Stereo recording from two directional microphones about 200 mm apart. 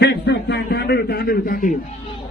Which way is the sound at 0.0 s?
60° left (ahead or behind).